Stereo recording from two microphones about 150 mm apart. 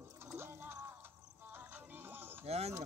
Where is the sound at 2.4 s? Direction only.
45° right (ahead or behind).